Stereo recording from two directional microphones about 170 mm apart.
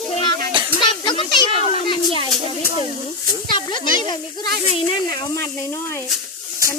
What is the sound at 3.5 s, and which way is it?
Speech, 25° left (ahead or behind).